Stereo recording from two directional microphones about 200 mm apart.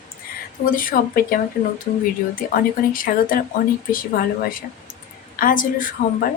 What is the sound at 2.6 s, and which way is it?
Speech, 45° left (ahead or behind).